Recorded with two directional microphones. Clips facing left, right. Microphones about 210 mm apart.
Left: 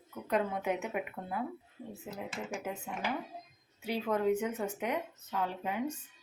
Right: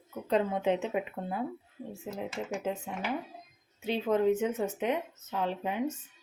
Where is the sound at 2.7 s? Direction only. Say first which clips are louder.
Right 8 dB; 25° right (ahead or behind).